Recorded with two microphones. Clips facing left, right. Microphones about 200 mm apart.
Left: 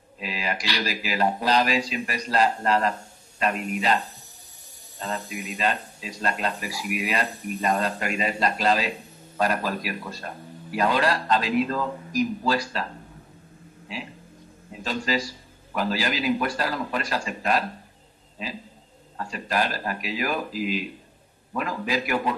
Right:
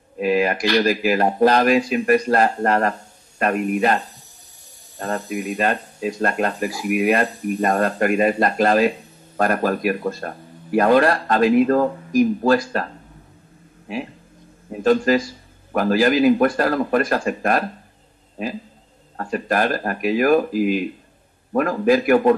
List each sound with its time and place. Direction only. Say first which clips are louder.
0.2 s speech: right 12 dB; 50° right (ahead or behind)
14.7 s speech: right 11 dB; 50° right (ahead or behind)